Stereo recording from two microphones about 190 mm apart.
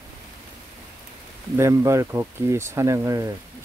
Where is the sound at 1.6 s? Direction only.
15° right (ahead or behind).